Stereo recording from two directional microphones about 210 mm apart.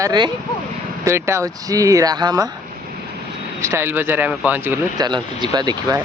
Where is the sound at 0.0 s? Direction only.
20° right (ahead or behind).